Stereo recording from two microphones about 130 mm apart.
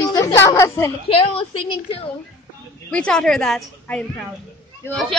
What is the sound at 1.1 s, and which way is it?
A woman's voice, 45° left (ahead or behind).